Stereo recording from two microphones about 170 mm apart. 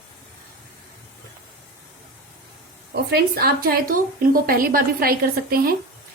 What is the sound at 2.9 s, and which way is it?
A woman's voice, 70° right (ahead or behind).